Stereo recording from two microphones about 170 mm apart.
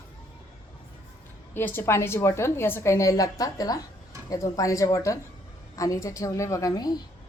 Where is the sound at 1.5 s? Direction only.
15° left (ahead or behind).